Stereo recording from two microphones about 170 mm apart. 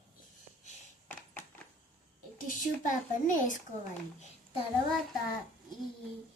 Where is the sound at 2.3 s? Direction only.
55° left (ahead or behind).